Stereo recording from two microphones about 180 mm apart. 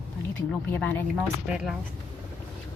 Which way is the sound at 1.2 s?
5° right (ahead or behind).